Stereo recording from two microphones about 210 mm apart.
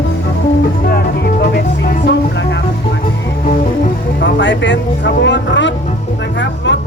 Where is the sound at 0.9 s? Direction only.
50° left (ahead or behind).